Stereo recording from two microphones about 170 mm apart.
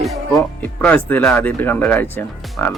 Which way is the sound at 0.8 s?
10° left (ahead or behind).